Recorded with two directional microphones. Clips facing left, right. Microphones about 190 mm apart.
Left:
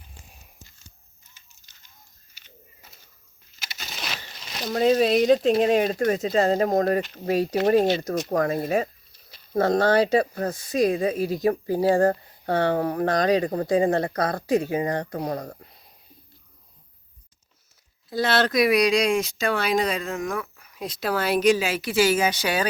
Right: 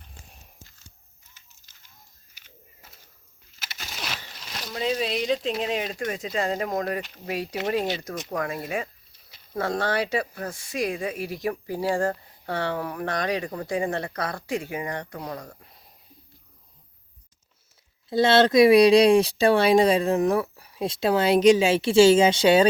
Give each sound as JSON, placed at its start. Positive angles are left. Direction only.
{"t": 2.3, "sound": "a sound", "side_deg": -5}
{"t": 4.6, "sound": "speech", "side_deg": 50}
{"t": 11.2, "sound": "speech", "side_deg": 25}
{"t": 18.1, "sound": "speech", "side_deg": -25}